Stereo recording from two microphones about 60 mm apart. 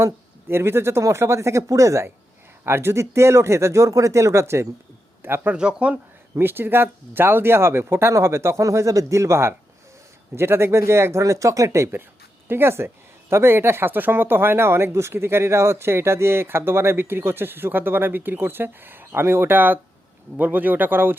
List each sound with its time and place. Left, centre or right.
0.0 s speech: right
2.6 s speech: right
5.2 s speech: right
5.5 s speech: centre
6.4 s speech: right
11.2 s speech: right
12.5 s speech: right